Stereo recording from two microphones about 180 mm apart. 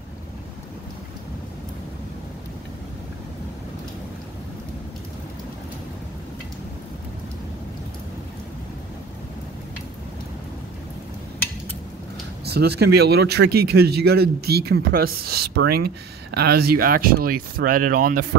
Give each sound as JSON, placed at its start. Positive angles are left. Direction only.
{"t": 12.4, "sound": "speech", "side_deg": -65}